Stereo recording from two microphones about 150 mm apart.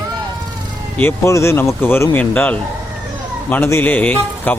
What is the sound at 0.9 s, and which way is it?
Speech, 15° left (ahead or behind).